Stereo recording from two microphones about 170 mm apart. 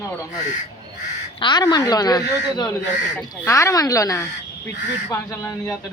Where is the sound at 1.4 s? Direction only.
25° left (ahead or behind).